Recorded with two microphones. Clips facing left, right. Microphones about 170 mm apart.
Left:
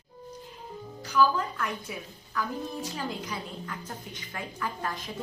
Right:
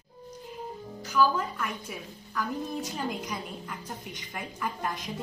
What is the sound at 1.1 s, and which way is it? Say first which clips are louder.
A woman's voice: left 1 dB; 10° right (ahead or behind).